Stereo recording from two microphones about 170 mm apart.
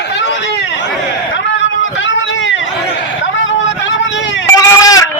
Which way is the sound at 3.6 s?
90° left.